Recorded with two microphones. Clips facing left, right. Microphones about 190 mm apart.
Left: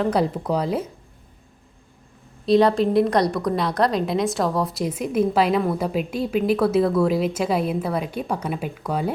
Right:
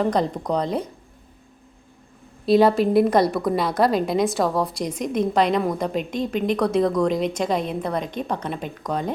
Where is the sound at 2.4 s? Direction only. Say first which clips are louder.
Even; 5° right (ahead or behind).